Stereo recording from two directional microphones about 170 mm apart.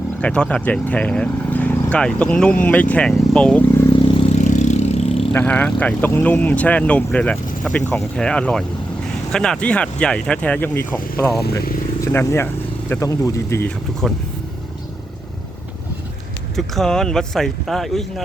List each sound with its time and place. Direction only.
0.2 s speech: 5° left (ahead or behind)
4.1 s vehicle: 30° left (ahead or behind)
4.4 s vehicle: 45° left (ahead or behind)
5.3 s speech: 10° left (ahead or behind)
14.0 s speech: 5° left (ahead or behind)
16.6 s speech: centre (ahead or behind)